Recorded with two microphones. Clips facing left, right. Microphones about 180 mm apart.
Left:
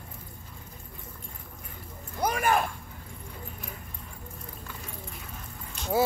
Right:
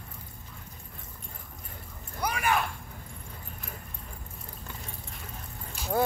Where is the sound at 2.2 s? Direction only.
45° left (ahead or behind).